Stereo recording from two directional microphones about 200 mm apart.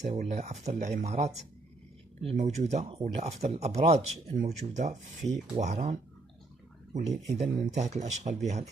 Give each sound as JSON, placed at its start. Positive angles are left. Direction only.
{"t": 0.1, "sound": "speech", "side_deg": -35}